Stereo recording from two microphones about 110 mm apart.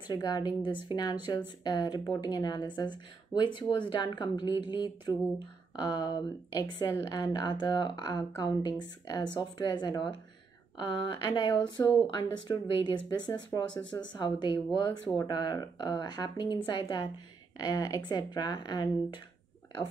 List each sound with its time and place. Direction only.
0.0 s a woman's voice: 40° left (ahead or behind)